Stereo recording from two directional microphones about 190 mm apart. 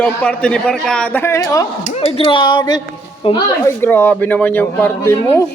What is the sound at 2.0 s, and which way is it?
Speech, 30° left (ahead or behind).